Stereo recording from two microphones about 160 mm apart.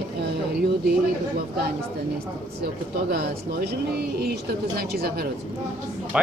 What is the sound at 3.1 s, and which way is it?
Speech, 70° right (ahead or behind).